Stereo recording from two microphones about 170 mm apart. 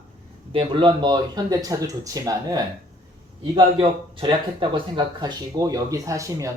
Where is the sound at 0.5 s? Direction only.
30° right (ahead or behind).